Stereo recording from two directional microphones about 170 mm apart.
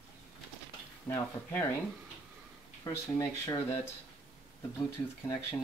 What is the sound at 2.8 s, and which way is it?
Speech, 20° left (ahead or behind).